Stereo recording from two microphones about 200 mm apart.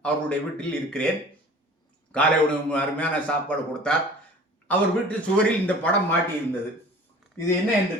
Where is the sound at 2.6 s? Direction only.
5° left (ahead or behind).